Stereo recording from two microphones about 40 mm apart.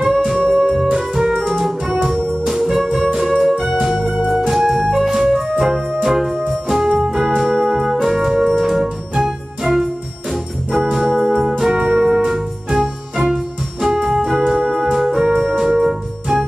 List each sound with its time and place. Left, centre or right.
0.0 s keyboard: centre
1.5 s music: centre
4.3 s organ: centre
4.9 s music: centre
10.9 s organ: centre
11.7 s music: right
12.2 s music: centre
15.2 s keyboard: centre